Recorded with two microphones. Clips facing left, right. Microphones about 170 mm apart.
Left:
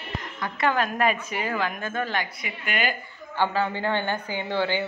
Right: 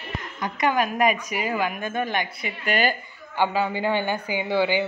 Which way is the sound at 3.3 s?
15° right (ahead or behind).